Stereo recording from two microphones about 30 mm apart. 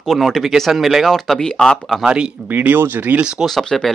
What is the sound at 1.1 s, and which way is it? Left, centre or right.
Speech, centre.